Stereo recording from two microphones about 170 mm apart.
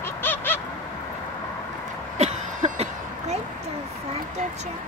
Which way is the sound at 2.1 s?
40° right (ahead or behind).